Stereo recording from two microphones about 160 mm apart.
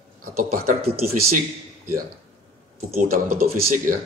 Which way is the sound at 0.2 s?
60° right (ahead or behind).